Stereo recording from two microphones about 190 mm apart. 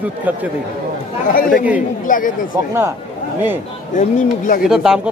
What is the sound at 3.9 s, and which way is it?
Speech, 40° left (ahead or behind).